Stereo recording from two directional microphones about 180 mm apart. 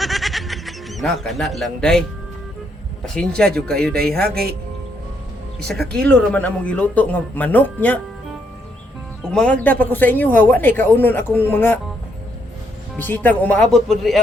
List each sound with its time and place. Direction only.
0.0 s a sound: centre (ahead or behind)
3.0 s speech: 5° left (ahead or behind)
4.2 s speech: 60° right (ahead or behind)
5.6 s speech: 5° left (ahead or behind)
9.3 s speech: 5° left (ahead or behind)
13.0 s speech: 10° left (ahead or behind)